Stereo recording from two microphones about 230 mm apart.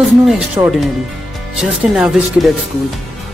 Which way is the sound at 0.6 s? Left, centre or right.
Centre.